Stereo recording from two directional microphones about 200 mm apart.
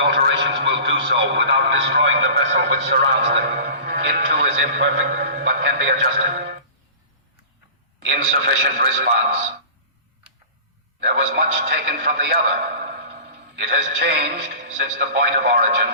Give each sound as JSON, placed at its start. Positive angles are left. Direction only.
{"t": 0.2, "sound": "a man's voice", "side_deg": -60}
{"t": 8.1, "sound": "a man's voice", "side_deg": -45}
{"t": 11.1, "sound": "a man's voice", "side_deg": -50}